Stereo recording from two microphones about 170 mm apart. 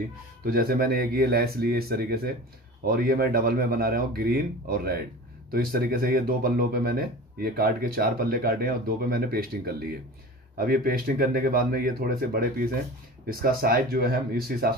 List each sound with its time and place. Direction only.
0.5 s speech: 60° right (ahead or behind)